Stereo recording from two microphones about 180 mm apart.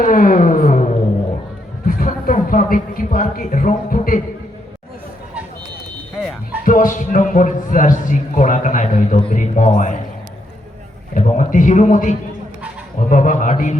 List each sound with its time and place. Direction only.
0.0 s a sound: 50° left (ahead or behind)
1.9 s a man's voice: 50° left (ahead or behind)
6.7 s a man's voice: 45° left (ahead or behind)
11.1 s a man's voice: 40° left (ahead or behind)